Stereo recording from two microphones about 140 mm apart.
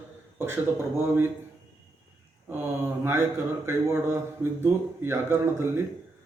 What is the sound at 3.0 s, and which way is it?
A man's voice, 20° right (ahead or behind).